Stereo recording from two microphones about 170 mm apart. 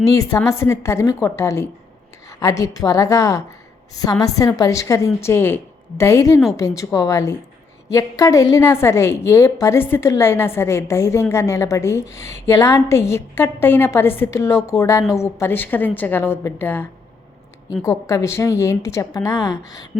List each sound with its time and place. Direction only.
0.0 s a woman's voice: 20° left (ahead or behind)
17.8 s a woman's voice: 20° left (ahead or behind)